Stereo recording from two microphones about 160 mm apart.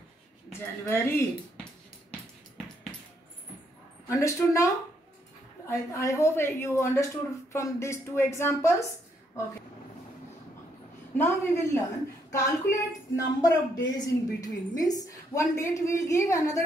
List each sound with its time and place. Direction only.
0.5 s speech: 15° left (ahead or behind)
4.1 s a woman's voice: 20° left (ahead or behind)
5.7 s speech: 15° left (ahead or behind)
11.1 s a woman's voice: 15° left (ahead or behind)